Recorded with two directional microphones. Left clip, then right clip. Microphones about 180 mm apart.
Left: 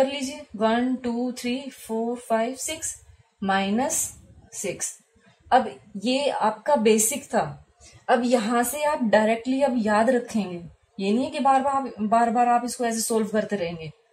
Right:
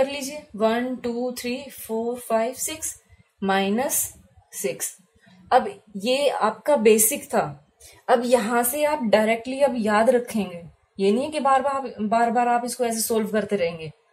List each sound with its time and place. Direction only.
0.0 s music: 45° right (ahead or behind)
3.3 s a woman's voice: 45° right (ahead or behind)
5.5 s music: 45° right (ahead or behind)
8.0 s a woman's voice: 35° right (ahead or behind)